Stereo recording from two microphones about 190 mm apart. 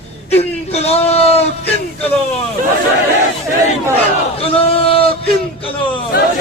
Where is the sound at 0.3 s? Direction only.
35° left (ahead or behind).